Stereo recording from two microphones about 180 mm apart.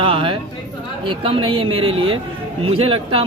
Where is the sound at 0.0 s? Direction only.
30° right (ahead or behind).